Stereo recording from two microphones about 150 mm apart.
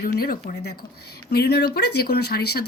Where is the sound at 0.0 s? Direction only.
75° left (ahead or behind).